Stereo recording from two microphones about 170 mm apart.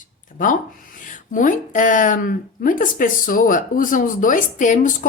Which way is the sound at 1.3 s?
50° left (ahead or behind).